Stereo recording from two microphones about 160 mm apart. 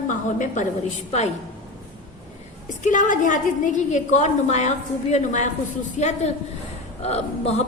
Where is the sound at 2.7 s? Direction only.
50° left (ahead or behind).